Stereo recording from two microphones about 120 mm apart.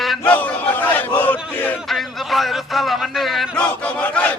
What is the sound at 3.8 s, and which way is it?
Speech, 10° left (ahead or behind).